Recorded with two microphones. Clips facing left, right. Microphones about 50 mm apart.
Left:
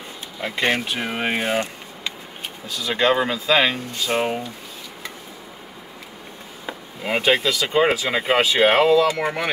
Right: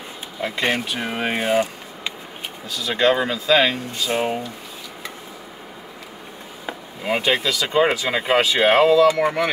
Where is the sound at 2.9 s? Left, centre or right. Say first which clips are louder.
Right 1 dB; centre.